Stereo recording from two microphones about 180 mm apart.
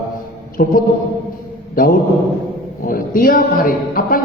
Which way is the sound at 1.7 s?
50° left (ahead or behind).